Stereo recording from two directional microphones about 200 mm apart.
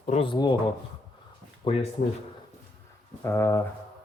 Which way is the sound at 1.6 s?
30° left (ahead or behind).